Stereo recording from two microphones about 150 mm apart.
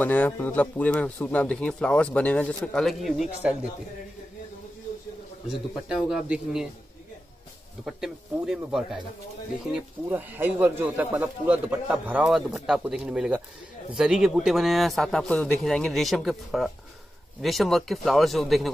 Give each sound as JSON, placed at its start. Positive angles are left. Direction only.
{"t": 0.0, "sound": "speech", "side_deg": 10}
{"t": 5.5, "sound": "a man's voice", "side_deg": -5}
{"t": 7.8, "sound": "a man's voice", "side_deg": -5}